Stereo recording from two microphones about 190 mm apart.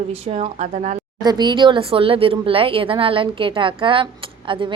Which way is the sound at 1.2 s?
20° right (ahead or behind).